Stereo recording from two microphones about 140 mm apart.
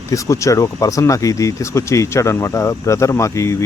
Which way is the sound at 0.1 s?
20° left (ahead or behind).